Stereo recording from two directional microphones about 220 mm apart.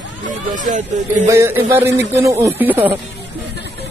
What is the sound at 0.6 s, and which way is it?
Speech, 35° right (ahead or behind).